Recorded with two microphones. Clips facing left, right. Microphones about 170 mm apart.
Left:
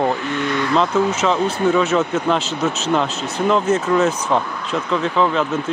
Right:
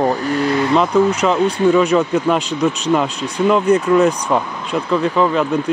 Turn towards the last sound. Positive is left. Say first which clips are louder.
# right 2 dB
turn(degrees=-5)  # may be behind; listen again after turning